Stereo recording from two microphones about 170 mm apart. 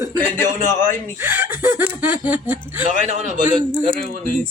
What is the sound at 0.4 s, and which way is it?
Speech, 50° right (ahead or behind).